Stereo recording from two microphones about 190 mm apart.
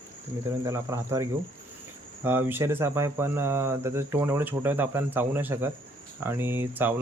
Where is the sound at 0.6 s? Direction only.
15° right (ahead or behind).